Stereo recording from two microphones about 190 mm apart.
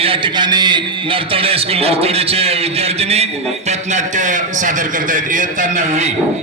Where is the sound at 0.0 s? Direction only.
25° right (ahead or behind).